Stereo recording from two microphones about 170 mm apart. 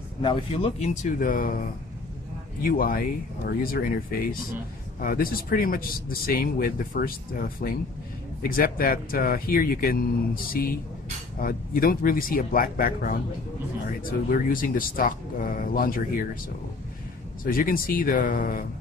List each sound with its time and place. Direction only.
0.2 s speech: 30° left (ahead or behind); by 1.6 s 55° left (ahead or behind)
2.6 s a man's voice: 55° left (ahead or behind)
17.5 s a man's voice: 55° left (ahead or behind)